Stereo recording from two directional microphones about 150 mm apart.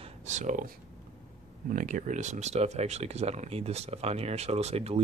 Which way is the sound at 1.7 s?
60° right (ahead or behind).